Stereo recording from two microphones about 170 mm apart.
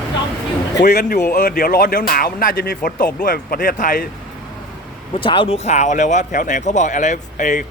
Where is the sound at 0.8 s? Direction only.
70° left (ahead or behind).